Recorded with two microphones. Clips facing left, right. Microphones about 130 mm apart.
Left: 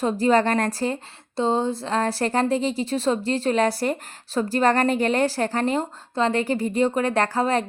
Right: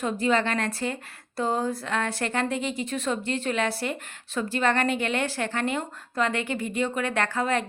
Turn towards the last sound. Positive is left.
turn(degrees=35)  # may be behind; listen again after turning